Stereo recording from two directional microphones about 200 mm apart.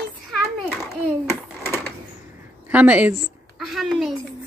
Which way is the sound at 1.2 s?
10° left (ahead or behind).